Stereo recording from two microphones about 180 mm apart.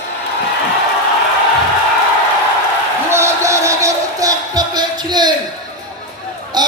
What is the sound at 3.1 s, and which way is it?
Music, 15° right (ahead or behind).